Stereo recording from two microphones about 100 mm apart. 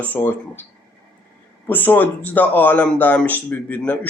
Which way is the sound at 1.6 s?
20° left (ahead or behind).